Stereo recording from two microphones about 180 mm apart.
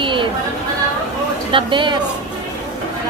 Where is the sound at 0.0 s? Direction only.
25° right (ahead or behind).